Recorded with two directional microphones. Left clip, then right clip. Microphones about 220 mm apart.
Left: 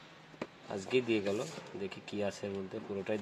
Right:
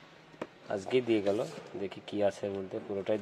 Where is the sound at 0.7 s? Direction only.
20° right (ahead or behind).